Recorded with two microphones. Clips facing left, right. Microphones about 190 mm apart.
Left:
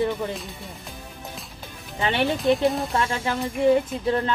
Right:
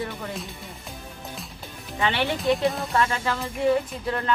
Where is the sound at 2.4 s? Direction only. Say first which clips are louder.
Left 3 dB; centre (ahead or behind).